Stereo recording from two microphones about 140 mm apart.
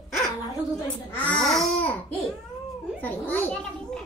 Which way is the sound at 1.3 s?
5° left (ahead or behind).